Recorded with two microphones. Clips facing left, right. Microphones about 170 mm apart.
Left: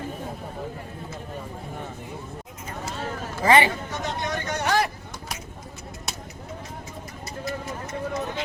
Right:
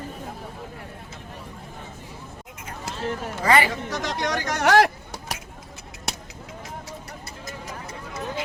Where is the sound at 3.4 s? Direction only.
25° left (ahead or behind).